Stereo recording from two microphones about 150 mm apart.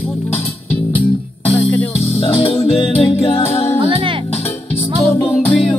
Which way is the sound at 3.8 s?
35° right (ahead or behind).